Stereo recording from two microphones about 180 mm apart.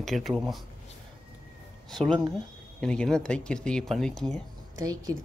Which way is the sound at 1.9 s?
Centre (ahead or behind).